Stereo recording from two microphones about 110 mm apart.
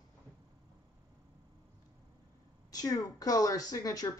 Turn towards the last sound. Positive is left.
turn(degrees=30)  # may be behind; listen again after turning